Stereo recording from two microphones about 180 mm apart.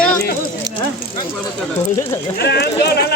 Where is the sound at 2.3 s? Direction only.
65° left (ahead or behind).